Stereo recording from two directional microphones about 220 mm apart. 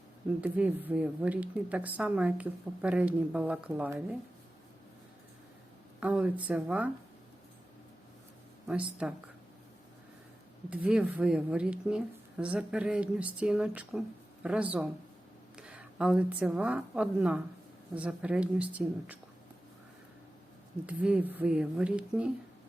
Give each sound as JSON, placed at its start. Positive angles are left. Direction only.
{"t": 0.4, "sound": "a woman's voice", "side_deg": -5}
{"t": 6.0, "sound": "a woman's voice", "side_deg": -5}
{"t": 8.6, "sound": "speech", "side_deg": -5}
{"t": 10.8, "sound": "a woman's voice", "side_deg": -5}
{"t": 20.8, "sound": "speech", "side_deg": -5}